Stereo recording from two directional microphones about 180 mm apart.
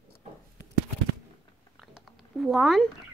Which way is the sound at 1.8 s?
Centre (ahead or behind).